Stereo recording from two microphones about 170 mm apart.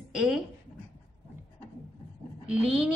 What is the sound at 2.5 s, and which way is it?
Speech, 5° right (ahead or behind).